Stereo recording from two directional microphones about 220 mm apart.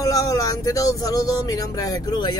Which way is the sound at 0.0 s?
15° left (ahead or behind).